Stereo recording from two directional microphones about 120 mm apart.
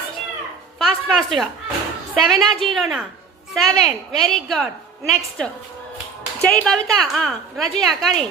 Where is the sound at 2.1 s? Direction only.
Centre (ahead or behind).